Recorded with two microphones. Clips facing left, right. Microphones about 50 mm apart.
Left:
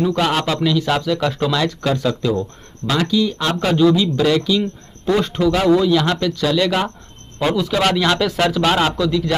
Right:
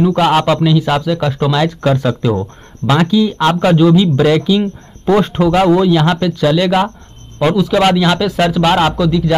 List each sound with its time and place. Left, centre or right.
0.0 s a man's voice: right